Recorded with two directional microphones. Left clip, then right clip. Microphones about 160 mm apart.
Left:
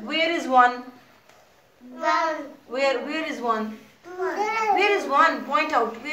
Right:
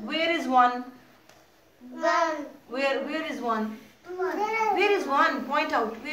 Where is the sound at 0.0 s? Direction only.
Centre (ahead or behind).